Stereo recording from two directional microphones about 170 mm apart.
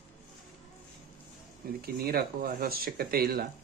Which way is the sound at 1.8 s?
65° right (ahead or behind).